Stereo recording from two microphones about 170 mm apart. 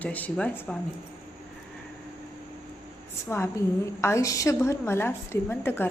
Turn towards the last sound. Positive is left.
turn(degrees=10)  # may be behind; listen again after turning